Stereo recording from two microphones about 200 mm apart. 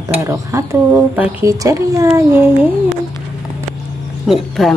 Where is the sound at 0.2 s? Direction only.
15° right (ahead or behind).